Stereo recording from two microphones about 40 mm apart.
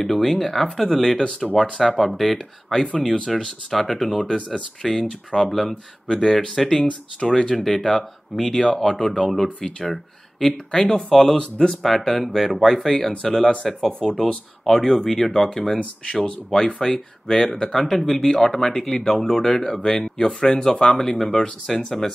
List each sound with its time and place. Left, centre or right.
0.0 s speech: centre
4.6 s speech: left
5.5 s speech: centre
6.0 s speech: left
15.8 s speech: left
16.8 s speech: centre
19.8 s speech: left